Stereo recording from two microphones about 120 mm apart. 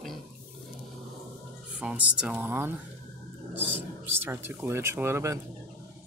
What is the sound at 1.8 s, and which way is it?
Speech, 10° right (ahead or behind).